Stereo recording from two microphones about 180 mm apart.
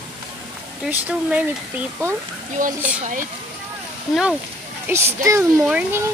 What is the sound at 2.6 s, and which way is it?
Speech, 45° right (ahead or behind).